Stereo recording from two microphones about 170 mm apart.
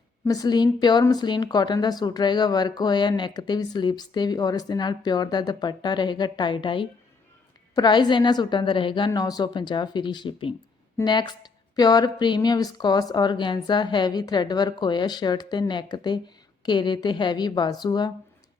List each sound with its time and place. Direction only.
0.3 s speech: 25° left (ahead or behind)